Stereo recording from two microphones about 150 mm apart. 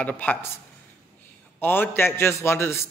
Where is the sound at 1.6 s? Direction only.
15° left (ahead or behind).